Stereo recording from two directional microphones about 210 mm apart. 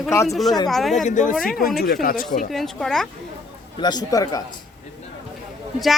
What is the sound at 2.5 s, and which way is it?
Speech, centre (ahead or behind).